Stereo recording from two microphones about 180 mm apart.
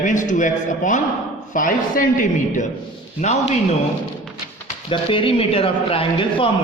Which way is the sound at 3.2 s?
40° left (ahead or behind).